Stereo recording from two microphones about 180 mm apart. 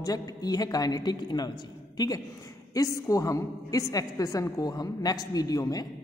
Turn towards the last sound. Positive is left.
turn(degrees=20)  # may be behind; listen again after turning